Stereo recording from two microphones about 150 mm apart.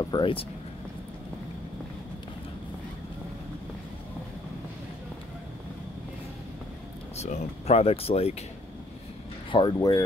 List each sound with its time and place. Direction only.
0.0 s speech: 30° left (ahead or behind)
7.2 s speech: 45° left (ahead or behind)
9.5 s speech: 30° left (ahead or behind)